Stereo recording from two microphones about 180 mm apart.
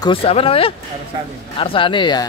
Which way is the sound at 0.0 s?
30° left (ahead or behind).